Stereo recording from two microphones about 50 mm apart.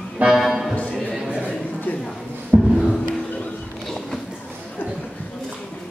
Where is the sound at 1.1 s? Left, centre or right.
Centre.